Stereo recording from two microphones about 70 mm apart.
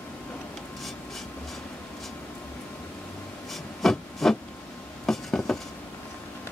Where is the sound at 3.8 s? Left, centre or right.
Centre.